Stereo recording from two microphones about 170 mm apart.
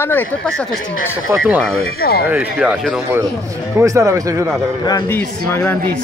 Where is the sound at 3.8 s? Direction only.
20° right (ahead or behind).